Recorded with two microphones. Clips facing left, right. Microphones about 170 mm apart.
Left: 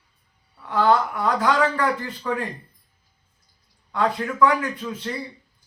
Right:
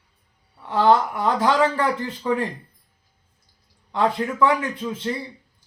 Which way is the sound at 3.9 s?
20° right (ahead or behind).